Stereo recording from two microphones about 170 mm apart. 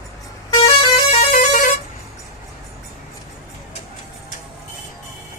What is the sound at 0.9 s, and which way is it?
Vehicle horn, 40° left (ahead or behind).